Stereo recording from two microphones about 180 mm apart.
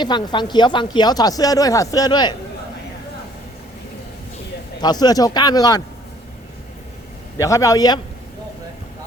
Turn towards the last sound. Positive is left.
turn(degrees=20)  # may be behind; listen again after turning